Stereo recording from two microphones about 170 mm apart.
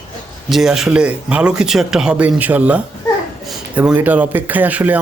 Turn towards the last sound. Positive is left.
turn(degrees=-10)  # may be behind; listen again after turning